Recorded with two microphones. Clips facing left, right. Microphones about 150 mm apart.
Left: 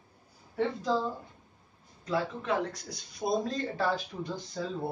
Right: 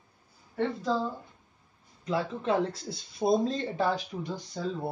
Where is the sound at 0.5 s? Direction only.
Centre (ahead or behind).